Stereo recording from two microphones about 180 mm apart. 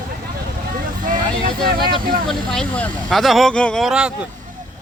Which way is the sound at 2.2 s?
5° left (ahead or behind).